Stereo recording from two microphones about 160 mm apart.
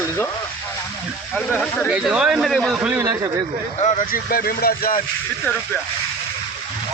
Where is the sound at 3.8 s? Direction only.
50° left (ahead or behind); by 5.0 s 70° left (ahead or behind).